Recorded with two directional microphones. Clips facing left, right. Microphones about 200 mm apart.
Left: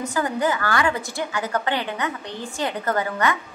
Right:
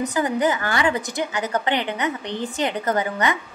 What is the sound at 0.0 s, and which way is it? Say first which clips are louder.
A woman's voice: right 2 dB; 20° right (ahead or behind).